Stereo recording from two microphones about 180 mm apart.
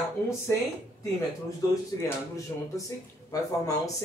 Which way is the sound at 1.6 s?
20° left (ahead or behind).